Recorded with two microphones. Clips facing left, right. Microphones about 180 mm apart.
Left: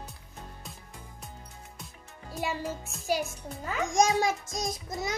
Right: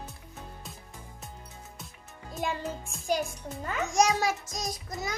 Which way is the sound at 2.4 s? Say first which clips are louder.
Right 1 dB; 5° left (ahead or behind).